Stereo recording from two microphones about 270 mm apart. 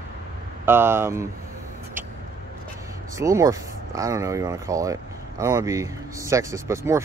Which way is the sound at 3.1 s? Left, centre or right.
Centre.